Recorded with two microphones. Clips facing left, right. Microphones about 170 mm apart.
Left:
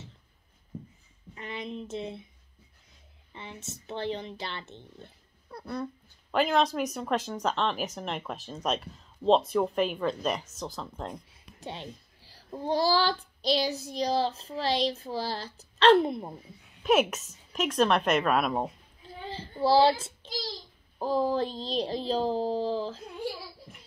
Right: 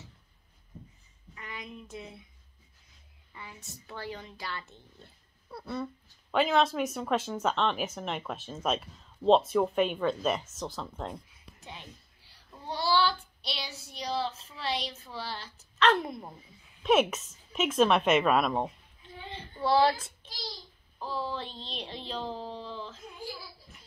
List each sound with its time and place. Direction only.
1.3 s speech: 25° left (ahead or behind)
3.3 s speech: 25° left (ahead or behind)
5.5 s a sound: 5° right (ahead or behind)
6.3 s speech: centre (ahead or behind)
11.6 s a child's voice: 30° left (ahead or behind)
16.8 s speech: centre (ahead or behind)
19.2 s a child's voice: 30° left (ahead or behind)
21.0 s speech: 45° left (ahead or behind)